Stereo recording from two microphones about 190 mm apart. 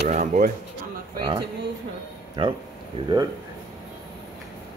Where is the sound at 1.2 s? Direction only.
25° right (ahead or behind).